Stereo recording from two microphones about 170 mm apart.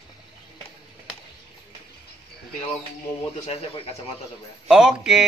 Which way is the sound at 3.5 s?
35° left (ahead or behind).